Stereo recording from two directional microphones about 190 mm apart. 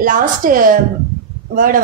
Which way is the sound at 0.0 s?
45° right (ahead or behind).